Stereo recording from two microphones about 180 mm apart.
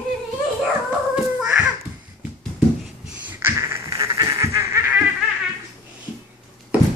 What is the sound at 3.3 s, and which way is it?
Duck, 10° right (ahead or behind).